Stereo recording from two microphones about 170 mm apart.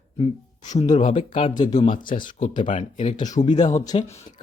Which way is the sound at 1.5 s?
25° left (ahead or behind).